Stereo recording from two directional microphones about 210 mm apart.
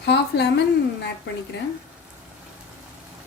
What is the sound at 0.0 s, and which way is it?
Speech, 55° left (ahead or behind).